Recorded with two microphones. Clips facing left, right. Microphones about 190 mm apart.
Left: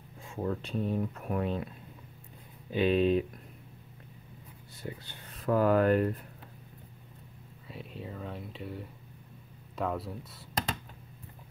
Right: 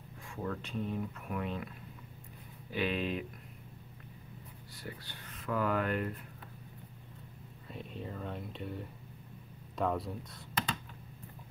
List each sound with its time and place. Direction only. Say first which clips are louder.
0.4 s speech: left 5 dB; 30° left (ahead or behind)
2.7 s speech: left 9 dB; 25° left (ahead or behind)
4.8 s speech: left 4 dB; 25° left (ahead or behind)
5.3 s a sound: left 7 dB; 40° left (ahead or behind)
7.6 s speech: even; 5° left (ahead or behind)